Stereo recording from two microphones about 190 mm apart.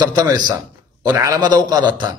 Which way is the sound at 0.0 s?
20° right (ahead or behind).